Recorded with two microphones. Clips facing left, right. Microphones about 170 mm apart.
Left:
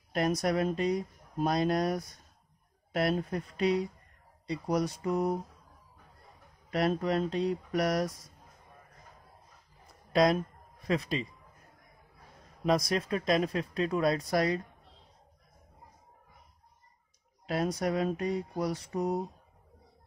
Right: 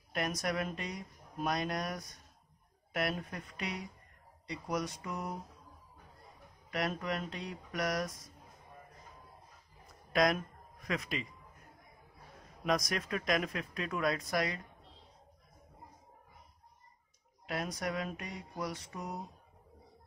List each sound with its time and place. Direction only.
0.1 s speech: 30° left (ahead or behind)
6.7 s speech: 35° left (ahead or behind)
10.1 s speech: 30° left (ahead or behind)
12.6 s speech: 30° left (ahead or behind)
17.5 s speech: 30° left (ahead or behind)